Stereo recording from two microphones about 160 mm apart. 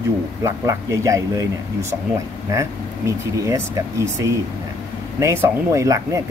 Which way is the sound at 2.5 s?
20° right (ahead or behind).